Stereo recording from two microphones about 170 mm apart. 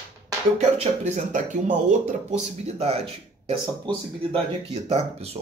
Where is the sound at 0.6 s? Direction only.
40° right (ahead or behind).